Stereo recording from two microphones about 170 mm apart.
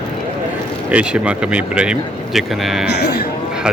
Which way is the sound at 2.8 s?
70° left (ahead or behind).